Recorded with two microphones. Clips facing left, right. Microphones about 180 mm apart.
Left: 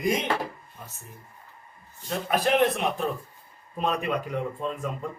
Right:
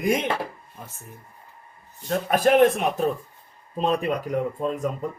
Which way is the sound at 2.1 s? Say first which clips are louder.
Right 5 dB; 50° right (ahead or behind).